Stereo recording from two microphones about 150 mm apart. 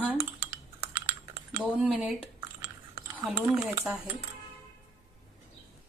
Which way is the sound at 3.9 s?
20° right (ahead or behind).